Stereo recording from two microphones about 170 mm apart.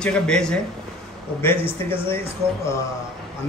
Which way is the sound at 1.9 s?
15° left (ahead or behind).